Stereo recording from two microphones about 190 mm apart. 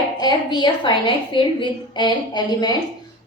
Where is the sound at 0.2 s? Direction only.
25° left (ahead or behind).